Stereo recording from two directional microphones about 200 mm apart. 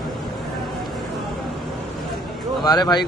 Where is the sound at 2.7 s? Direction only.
20° left (ahead or behind).